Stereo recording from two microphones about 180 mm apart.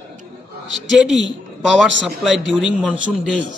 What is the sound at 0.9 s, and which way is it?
A man's voice, centre (ahead or behind).